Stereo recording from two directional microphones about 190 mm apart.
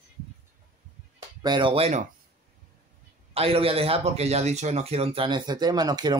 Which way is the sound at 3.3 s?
30° right (ahead or behind).